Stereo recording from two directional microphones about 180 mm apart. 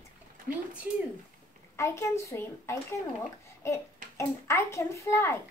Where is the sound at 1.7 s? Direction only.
15° left (ahead or behind).